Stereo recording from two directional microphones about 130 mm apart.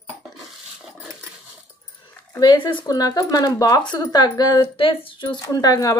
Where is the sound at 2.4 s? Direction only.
40° left (ahead or behind).